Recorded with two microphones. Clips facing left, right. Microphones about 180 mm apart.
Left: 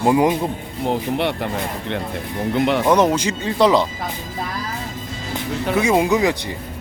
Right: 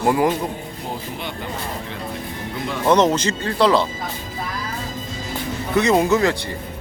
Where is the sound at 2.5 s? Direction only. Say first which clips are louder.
Left 10 dB; 70° left (ahead or behind).